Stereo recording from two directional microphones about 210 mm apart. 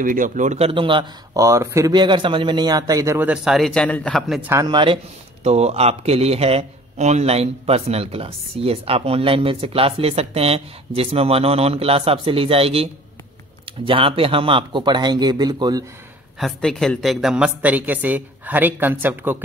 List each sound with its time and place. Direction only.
0.0 s speech: 40° right (ahead or behind); by 15.8 s 20° right (ahead or behind)
16.3 s a woman's voice: centre (ahead or behind)